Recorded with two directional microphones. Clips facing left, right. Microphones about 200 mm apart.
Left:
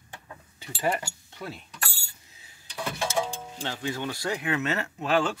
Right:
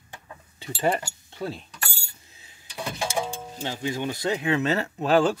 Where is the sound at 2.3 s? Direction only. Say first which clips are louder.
Right 1 dB; 20° right (ahead or behind).